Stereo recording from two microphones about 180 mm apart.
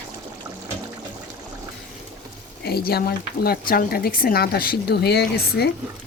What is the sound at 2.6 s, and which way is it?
Speech, 60° left (ahead or behind).